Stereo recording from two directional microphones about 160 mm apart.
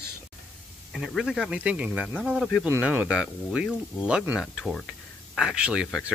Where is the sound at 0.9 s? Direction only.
Centre (ahead or behind).